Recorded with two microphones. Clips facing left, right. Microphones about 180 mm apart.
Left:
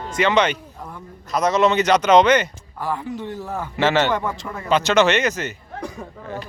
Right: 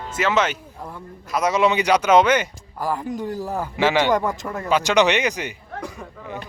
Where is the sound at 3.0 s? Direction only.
40° right (ahead or behind).